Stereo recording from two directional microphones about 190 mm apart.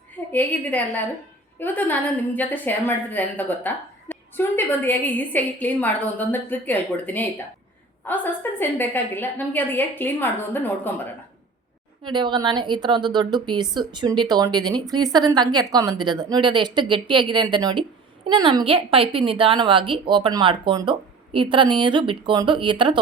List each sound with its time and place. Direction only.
0.3 s a woman's voice: 10° left (ahead or behind)
12.0 s a woman's voice: 25° right (ahead or behind)